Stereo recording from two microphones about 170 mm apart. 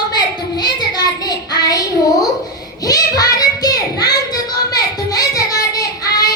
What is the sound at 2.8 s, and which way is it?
Child singing, 20° left (ahead or behind).